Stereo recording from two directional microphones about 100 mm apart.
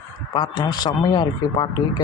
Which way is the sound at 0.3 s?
45° left (ahead or behind).